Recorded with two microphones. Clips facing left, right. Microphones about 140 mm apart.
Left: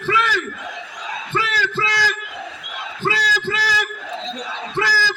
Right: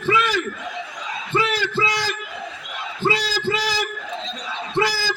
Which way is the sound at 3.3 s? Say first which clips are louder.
Right 1 dB; 20° right (ahead or behind).